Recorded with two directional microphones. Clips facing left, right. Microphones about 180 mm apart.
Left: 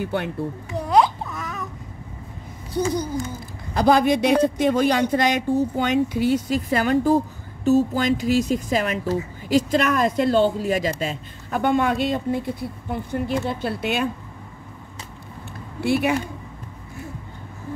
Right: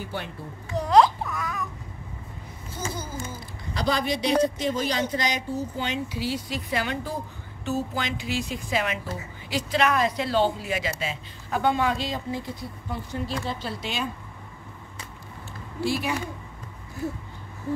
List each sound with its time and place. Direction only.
0.0 s speech: 60° left (ahead or behind)
0.7 s a sound: 10° left (ahead or behind)
1.2 s baby cry: 20° left (ahead or behind)
2.7 s babbling: 15° left (ahead or behind)
3.7 s speech: 50° left (ahead or behind)
15.8 s speech: 60° left (ahead or behind)